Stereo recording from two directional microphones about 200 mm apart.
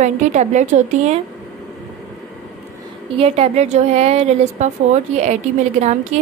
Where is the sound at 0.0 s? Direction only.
35° right (ahead or behind).